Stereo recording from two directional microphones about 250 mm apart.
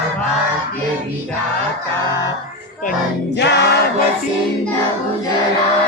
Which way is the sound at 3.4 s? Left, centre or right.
Left.